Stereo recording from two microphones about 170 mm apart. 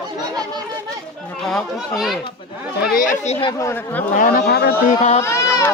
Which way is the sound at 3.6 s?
15° left (ahead or behind).